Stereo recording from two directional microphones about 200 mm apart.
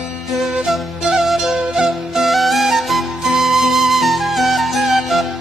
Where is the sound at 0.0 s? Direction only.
Centre (ahead or behind).